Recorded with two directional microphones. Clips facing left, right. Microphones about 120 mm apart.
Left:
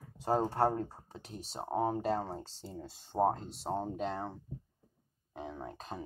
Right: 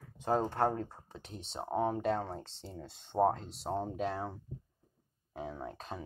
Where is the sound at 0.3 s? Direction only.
10° left (ahead or behind).